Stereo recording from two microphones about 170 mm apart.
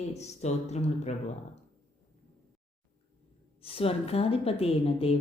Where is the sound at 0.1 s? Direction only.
40° left (ahead or behind).